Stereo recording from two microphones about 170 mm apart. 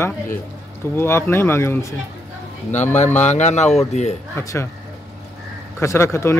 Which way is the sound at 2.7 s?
45° left (ahead or behind).